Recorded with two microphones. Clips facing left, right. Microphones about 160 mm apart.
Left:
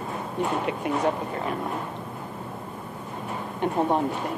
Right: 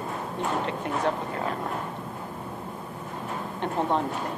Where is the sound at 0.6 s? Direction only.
10° left (ahead or behind).